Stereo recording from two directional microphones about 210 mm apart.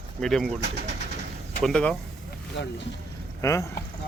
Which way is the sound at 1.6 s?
5° left (ahead or behind).